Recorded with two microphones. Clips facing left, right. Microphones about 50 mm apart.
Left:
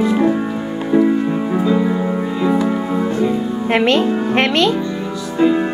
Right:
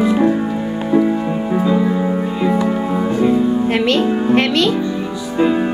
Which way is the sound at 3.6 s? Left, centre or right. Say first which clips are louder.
Left 1 dB; left.